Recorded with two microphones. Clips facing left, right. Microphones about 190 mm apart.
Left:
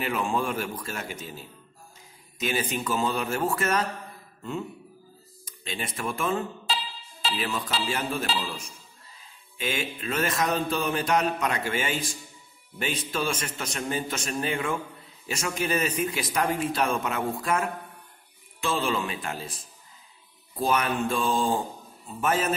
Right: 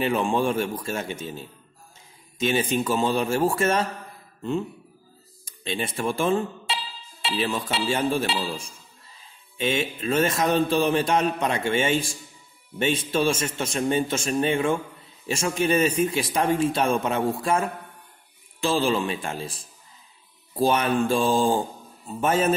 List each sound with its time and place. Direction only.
0.0 s speech: 30° right (ahead or behind)
5.4 s speech: 25° right (ahead or behind)
20.5 s speech: 30° right (ahead or behind)